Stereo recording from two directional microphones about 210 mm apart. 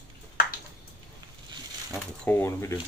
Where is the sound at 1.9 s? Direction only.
10° left (ahead or behind).